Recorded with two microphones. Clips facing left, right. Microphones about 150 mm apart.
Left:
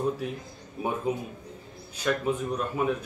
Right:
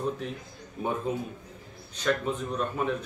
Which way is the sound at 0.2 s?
10° left (ahead or behind).